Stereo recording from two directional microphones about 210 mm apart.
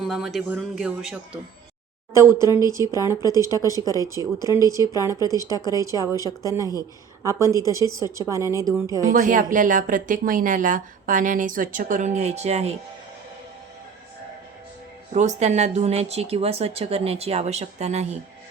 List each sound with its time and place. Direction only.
0.0 s speech: centre (ahead or behind)
3.8 s a woman's voice: 15° left (ahead or behind)
4.4 s speech: 15° right (ahead or behind)
5.4 s a woman's voice: 15° left (ahead or behind)
6.5 s speech: 15° right (ahead or behind)
9.1 s speech: 40° right (ahead or behind)
15.1 s speech: 35° right (ahead or behind)